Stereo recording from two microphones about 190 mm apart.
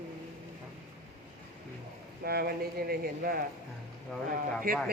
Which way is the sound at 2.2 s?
55° right (ahead or behind).